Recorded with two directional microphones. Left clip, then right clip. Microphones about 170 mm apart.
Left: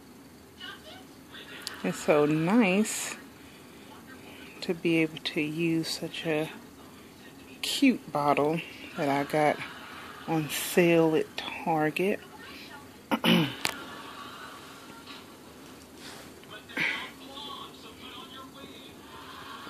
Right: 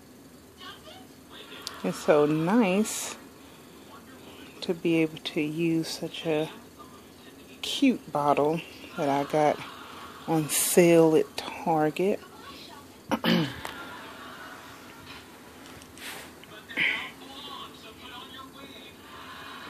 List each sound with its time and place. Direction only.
1.8 s speech: 10° right (ahead or behind)
4.6 s speech: 10° right (ahead or behind)
7.6 s speech: 10° right (ahead or behind)
13.1 s throat clearing: 5° left (ahead or behind)
16.7 s a sound: 15° left (ahead or behind)